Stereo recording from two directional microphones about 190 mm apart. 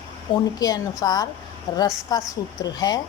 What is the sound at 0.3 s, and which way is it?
Speech, 25° left (ahead or behind).